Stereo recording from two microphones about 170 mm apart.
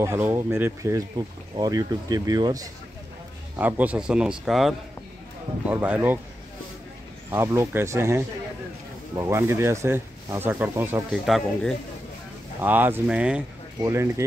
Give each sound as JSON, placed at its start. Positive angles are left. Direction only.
{"t": 0.0, "sound": "speech", "side_deg": -15}
{"t": 3.5, "sound": "a man's voice", "side_deg": -10}
{"t": 7.2, "sound": "speech", "side_deg": -15}
{"t": 11.1, "sound": "a man's voice", "side_deg": 0}
{"t": 12.5, "sound": "speech", "side_deg": -10}
{"t": 13.8, "sound": "speech", "side_deg": -15}